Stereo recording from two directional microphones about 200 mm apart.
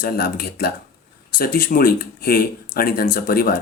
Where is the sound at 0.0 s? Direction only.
50° left (ahead or behind).